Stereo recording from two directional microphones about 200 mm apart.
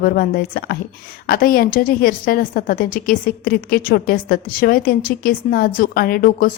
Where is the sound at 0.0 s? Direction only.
45° left (ahead or behind).